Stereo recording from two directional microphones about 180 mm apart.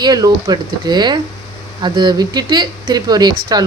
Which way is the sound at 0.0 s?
20° right (ahead or behind).